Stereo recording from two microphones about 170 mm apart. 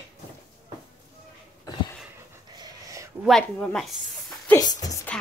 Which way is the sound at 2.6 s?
20° right (ahead or behind).